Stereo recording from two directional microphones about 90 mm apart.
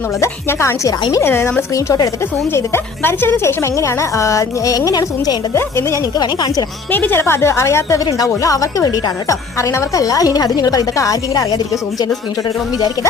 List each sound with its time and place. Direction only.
0.2 s a woman's voice: 30° left (ahead or behind)
1.7 s a woman's voice: 40° left (ahead or behind)
5.5 s a woman's voice: 30° left (ahead or behind)
6.1 s a woman's voice: 50° left (ahead or behind)
6.9 s a woman's voice: 25° left (ahead or behind); by 12.1 s 40° left (ahead or behind)